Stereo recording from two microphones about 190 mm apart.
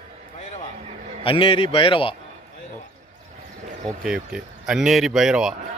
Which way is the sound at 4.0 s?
5° right (ahead or behind).